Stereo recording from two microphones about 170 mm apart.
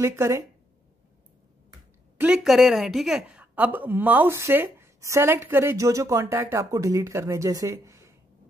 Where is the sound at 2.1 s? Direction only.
5° right (ahead or behind).